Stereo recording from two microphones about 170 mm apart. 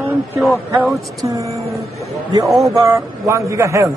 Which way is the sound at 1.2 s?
20° right (ahead or behind).